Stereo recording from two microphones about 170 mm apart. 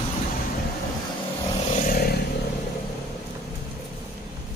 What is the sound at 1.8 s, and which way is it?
Vehicle, 60° left (ahead or behind).